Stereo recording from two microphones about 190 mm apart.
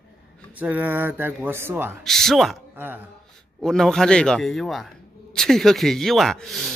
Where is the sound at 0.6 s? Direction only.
10° right (ahead or behind).